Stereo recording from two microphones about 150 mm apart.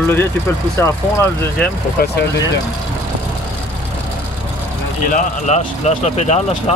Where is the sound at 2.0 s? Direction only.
90° left.